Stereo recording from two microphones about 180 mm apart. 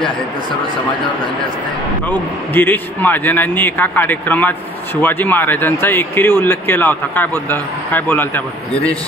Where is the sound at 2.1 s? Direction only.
10° left (ahead or behind).